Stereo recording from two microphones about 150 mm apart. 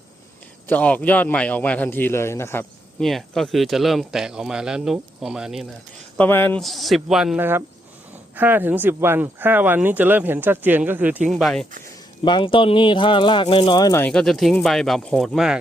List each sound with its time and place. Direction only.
0.7 s a man's voice: 10° left (ahead or behind)
3.0 s speech: centre (ahead or behind)
6.1 s a man's voice: 15° left (ahead or behind)
6.6 s speech: centre (ahead or behind)
7.3 s speech: 15° right (ahead or behind)
11.3 s speech: centre (ahead or behind)
12.2 s speech: 35° left (ahead or behind)
14.0 s speech: 5° left (ahead or behind)